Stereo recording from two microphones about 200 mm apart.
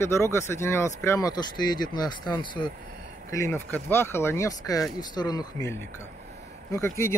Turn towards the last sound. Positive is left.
turn(degrees=10)  # may be behind; listen again after turning